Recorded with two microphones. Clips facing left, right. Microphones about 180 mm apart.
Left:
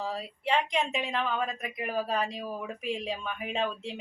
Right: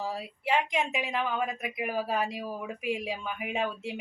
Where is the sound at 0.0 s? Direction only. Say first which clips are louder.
Even; 10° right (ahead or behind).